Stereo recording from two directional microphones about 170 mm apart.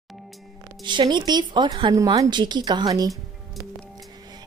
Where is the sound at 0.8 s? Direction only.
25° right (ahead or behind).